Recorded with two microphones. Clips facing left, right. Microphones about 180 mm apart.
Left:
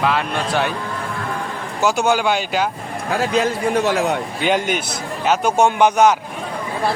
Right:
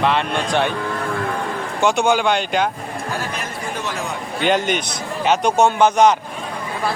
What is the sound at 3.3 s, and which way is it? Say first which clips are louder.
Speech: left 10 dB; 70° left (ahead or behind).